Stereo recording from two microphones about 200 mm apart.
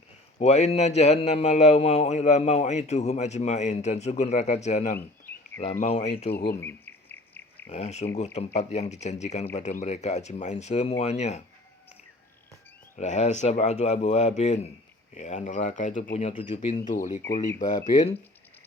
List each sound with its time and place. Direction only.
0.3 s a man's voice: 35° left (ahead or behind)
4.9 s a sound: 10° left (ahead or behind)
5.8 s a man's voice: 30° left (ahead or behind)
6.3 s speech: 55° left (ahead or behind)
6.6 s insect: 10° left (ahead or behind)
7.7 s a man's voice: 35° left (ahead or behind)
13.0 s a man's voice: 35° left (ahead or behind)